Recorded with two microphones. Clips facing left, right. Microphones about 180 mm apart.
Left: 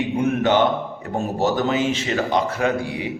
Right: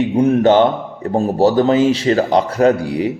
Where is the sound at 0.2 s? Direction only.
30° right (ahead or behind).